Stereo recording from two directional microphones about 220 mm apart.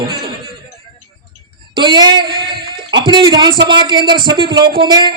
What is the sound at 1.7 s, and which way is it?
A man's voice, 20° right (ahead or behind).